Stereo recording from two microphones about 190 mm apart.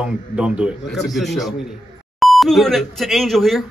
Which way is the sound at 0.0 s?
5° right (ahead or behind).